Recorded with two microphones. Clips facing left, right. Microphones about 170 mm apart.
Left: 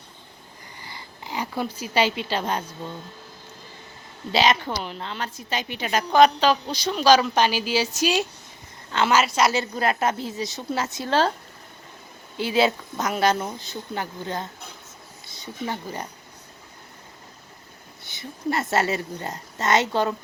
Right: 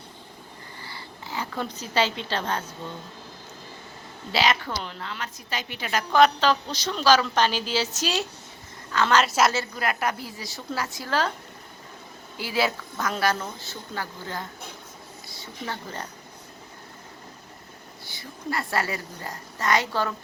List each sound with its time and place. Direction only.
0.8 s a sound: 15° left (ahead or behind)
4.3 s a woman's voice: 20° left (ahead or behind)
9.7 s a woman's voice: 30° left (ahead or behind)
12.4 s a woman's voice: 20° left (ahead or behind)
18.0 s a woman's voice: 20° left (ahead or behind)